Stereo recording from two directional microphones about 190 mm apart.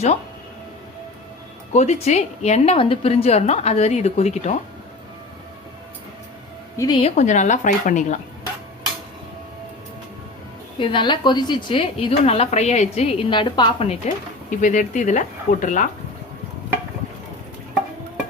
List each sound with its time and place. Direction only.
1.7 s a woman's voice: 35° left (ahead or behind)
6.7 s a woman's voice: 25° left (ahead or behind)
7.2 s a woman's voice: 40° left (ahead or behind)
10.8 s a woman's voice: 25° left (ahead or behind); by 15.9 s 45° left (ahead or behind)